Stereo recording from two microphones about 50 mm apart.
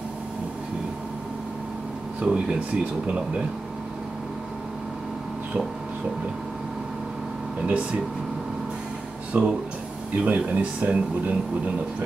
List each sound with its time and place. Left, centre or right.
2.1 s speech: centre
7.6 s speech: right
9.3 s speech: right